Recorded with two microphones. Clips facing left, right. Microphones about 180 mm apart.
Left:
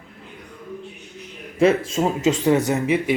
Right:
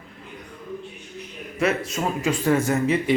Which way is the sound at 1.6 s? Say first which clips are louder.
Left 6 dB; 30° left (ahead or behind).